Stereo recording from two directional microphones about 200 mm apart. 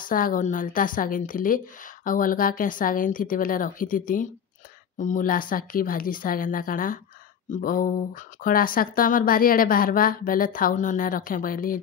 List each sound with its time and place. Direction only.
0.0 s speech: 45° left (ahead or behind)